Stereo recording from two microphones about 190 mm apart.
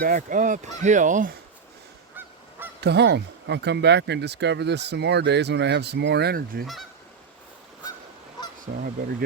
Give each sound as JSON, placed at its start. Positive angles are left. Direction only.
{"t": 0.0, "sound": "speech", "side_deg": -45}
{"t": 2.8, "sound": "speech", "side_deg": -60}
{"t": 8.7, "sound": "goose", "side_deg": -45}